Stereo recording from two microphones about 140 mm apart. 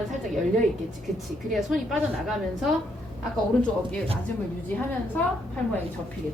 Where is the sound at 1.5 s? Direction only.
Centre (ahead or behind).